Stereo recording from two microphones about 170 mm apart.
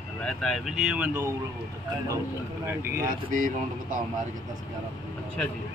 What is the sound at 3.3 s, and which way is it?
Speech, 55° right (ahead or behind).